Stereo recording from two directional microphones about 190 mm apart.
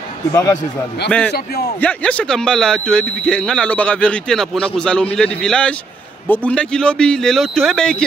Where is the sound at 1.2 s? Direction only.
55° left (ahead or behind).